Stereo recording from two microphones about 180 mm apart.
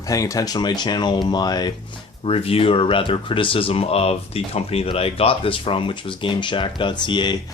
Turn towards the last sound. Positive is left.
turn(degrees=25)  # may be behind; listen again after turning